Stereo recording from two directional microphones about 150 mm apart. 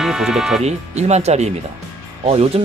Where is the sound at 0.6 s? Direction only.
45° right (ahead or behind).